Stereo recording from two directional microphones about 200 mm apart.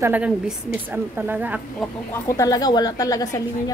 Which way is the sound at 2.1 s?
15° left (ahead or behind).